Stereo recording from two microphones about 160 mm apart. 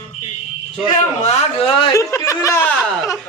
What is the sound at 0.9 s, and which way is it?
A man's voice, 45° left (ahead or behind).